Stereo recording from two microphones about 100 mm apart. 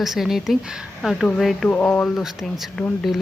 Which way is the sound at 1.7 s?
15° left (ahead or behind).